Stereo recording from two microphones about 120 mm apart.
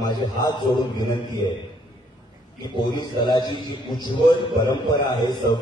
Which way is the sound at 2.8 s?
35° left (ahead or behind).